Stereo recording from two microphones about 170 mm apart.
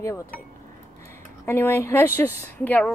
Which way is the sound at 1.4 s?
15° left (ahead or behind).